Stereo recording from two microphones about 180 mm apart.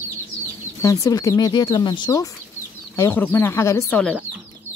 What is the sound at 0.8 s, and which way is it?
Speech, 20° left (ahead or behind).